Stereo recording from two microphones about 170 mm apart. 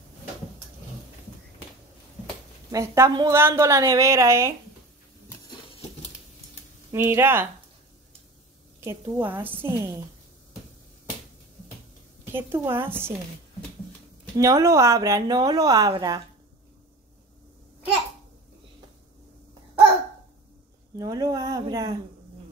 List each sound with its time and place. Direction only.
2.2 s a sound: 20° right (ahead or behind)
3.3 s a woman's voice: 15° right (ahead or behind)
6.9 s a woman's voice: 15° right (ahead or behind)
8.8 s a woman's voice: 15° right (ahead or behind)
12.3 s a woman's voice: 15° right (ahead or behind)
14.3 s speech: 20° right (ahead or behind)
21.0 s speech: 20° right (ahead or behind)